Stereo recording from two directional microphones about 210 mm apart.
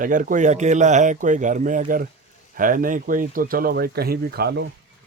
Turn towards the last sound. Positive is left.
turn(degrees=-50)  # may be behind; listen again after turning